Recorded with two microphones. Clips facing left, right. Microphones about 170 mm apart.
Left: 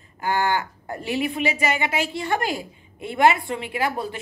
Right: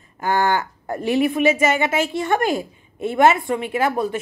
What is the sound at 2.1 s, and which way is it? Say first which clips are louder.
A woman's voice: right 5 dB; 20° right (ahead or behind).